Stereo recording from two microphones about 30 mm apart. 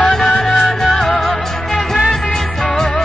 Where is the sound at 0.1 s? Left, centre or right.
Centre.